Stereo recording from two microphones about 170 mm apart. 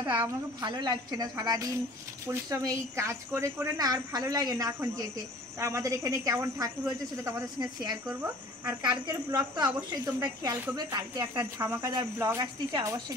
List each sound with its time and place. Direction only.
0.0 s a woman's voice: 25° right (ahead or behind)